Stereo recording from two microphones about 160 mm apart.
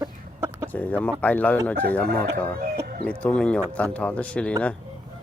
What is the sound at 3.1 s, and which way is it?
A man's voice, 5° left (ahead or behind).